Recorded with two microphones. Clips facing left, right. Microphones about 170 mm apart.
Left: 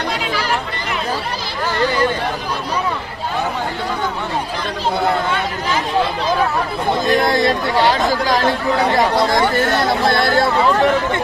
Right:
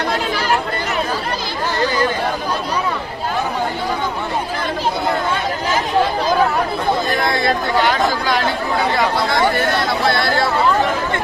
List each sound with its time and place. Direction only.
7.2 s speech: 40° left (ahead or behind)